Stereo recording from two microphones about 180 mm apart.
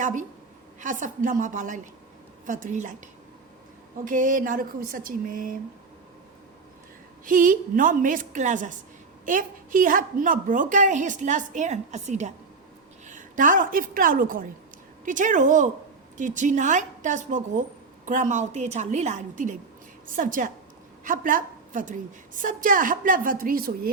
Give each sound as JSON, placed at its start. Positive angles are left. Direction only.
{"t": 0.0, "sound": "a woman's voice", "side_deg": -45}
{"t": 4.0, "sound": "speech", "side_deg": -45}
{"t": 7.3, "sound": "a woman's voice", "side_deg": -50}